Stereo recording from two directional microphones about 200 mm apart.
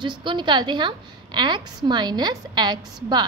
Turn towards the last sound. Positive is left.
turn(degrees=-20)  # may be behind; listen again after turning